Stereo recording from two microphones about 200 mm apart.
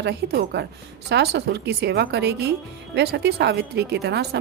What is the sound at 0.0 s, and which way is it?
Speech, 55° right (ahead or behind).